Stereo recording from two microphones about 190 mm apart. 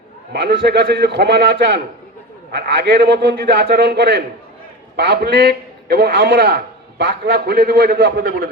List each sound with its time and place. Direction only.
0.3 s a man's voice: 55° right (ahead or behind)